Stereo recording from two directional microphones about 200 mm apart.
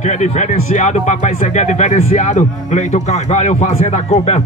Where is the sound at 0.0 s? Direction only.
35° left (ahead or behind).